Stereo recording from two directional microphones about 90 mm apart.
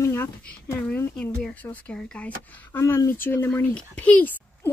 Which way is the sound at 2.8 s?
40° left (ahead or behind).